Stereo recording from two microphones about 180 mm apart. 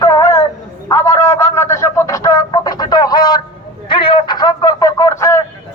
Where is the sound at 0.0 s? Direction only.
15° left (ahead or behind).